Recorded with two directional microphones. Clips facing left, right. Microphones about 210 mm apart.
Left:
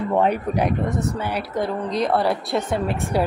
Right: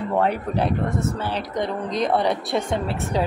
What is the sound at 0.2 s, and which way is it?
A woman's voice, 15° left (ahead or behind).